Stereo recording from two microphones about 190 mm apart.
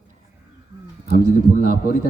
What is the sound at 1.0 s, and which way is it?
Speech, 55° left (ahead or behind).